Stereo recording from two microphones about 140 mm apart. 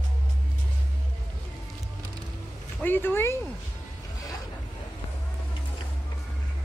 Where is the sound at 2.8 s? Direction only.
15° left (ahead or behind).